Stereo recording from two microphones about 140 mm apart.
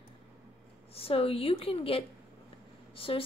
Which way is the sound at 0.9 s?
45° left (ahead or behind).